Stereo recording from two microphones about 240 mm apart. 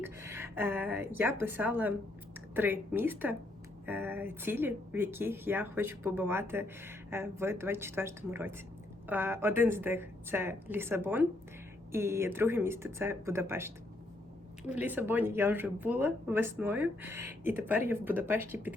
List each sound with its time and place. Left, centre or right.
0.0 s a woman's voice: centre